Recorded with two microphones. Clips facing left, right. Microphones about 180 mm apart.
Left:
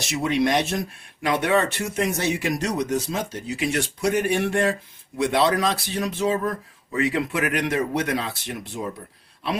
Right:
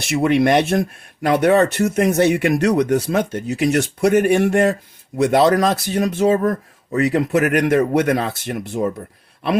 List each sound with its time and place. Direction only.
0.0 s speech: 60° right (ahead or behind)